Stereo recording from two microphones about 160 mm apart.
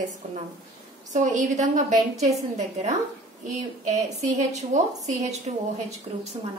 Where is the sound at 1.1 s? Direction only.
50° right (ahead or behind).